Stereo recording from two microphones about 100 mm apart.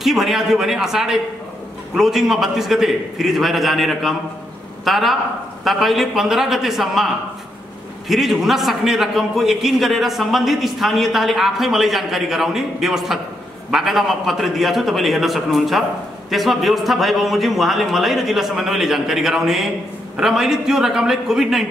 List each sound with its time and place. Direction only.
0.0 s a man's voice: 5° right (ahead or behind)
8.1 s a man's voice: centre (ahead or behind)